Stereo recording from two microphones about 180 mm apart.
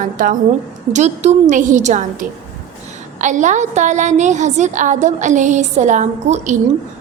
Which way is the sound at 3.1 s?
40° right (ahead or behind).